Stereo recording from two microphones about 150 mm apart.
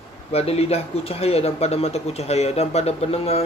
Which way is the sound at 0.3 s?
40° left (ahead or behind).